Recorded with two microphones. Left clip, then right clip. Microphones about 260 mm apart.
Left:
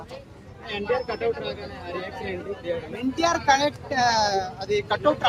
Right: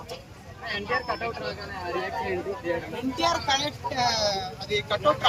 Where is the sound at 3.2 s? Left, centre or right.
Centre.